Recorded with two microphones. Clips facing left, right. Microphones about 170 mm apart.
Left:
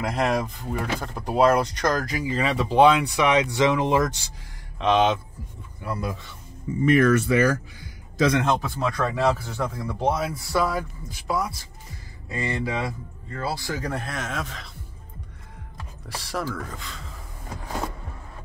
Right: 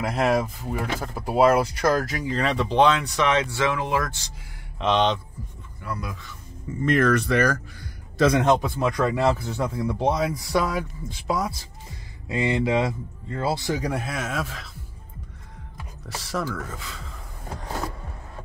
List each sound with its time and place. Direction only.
0.0 s speech: 5° right (ahead or behind); by 4.2 s 20° left (ahead or behind)
4.7 s speech: centre (ahead or behind)
5.8 s speech: 25° left (ahead or behind)
6.8 s speech: 10° left (ahead or behind)
8.4 s speech: 15° right (ahead or behind)
15.8 s gasp: centre (ahead or behind)
16.5 s speech: centre (ahead or behind)